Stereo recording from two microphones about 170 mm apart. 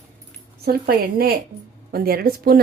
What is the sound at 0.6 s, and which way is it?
A woman's voice, 65° right (ahead or behind).